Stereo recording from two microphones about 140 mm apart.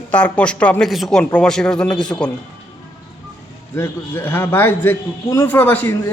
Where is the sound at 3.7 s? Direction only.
20° left (ahead or behind).